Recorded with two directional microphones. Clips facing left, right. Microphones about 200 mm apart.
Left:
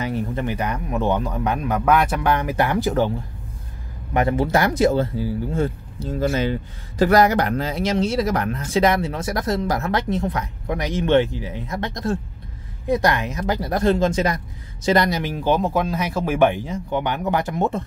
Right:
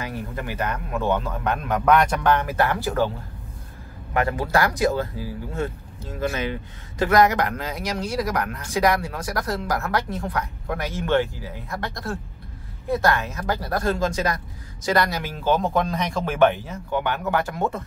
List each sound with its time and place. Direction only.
0.0 s speech: 20° left (ahead or behind)
4.1 s speech: 20° left (ahead or behind)